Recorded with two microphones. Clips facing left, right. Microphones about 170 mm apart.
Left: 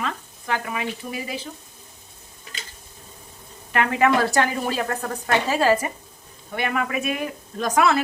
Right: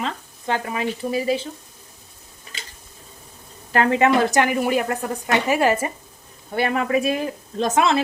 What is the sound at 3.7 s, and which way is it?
Sizzle, 30° right (ahead or behind).